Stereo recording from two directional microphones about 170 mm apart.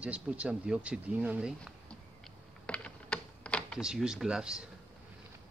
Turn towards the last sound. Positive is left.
turn(degrees=-5)  # may be behind; listen again after turning